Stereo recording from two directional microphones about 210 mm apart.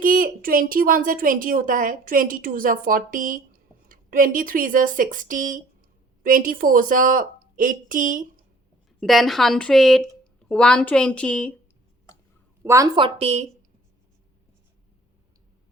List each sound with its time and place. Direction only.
0.0 s a woman's voice: 40° right (ahead or behind)
9.0 s speech: centre (ahead or behind)
12.6 s a woman's voice: 15° right (ahead or behind)
13.1 s a woman's voice: 30° right (ahead or behind)